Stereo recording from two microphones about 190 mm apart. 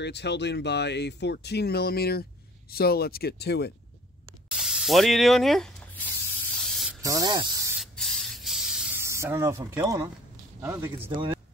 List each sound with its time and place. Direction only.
0.0 s speech: 65° left (ahead or behind)
4.5 s spray: 5° right (ahead or behind)
7.0 s speech: 15° right (ahead or behind)
7.8 s spray: centre (ahead or behind); by 10.0 s 15° right (ahead or behind)
10.6 s speech: 10° right (ahead or behind)
11.1 s speech: 25° right (ahead or behind)